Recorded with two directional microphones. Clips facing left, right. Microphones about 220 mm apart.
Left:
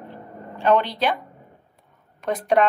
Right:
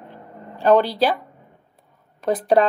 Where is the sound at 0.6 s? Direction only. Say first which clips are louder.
Right 4 dB; 35° right (ahead or behind).